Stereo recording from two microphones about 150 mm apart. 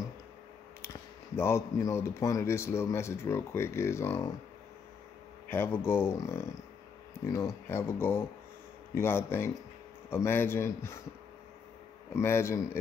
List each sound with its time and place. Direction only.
0.8 s speech: 15° left (ahead or behind)
5.5 s speech: 15° left (ahead or behind)
12.2 s speech: 15° left (ahead or behind)